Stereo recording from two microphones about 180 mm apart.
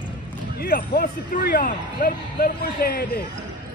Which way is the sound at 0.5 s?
55° left (ahead or behind).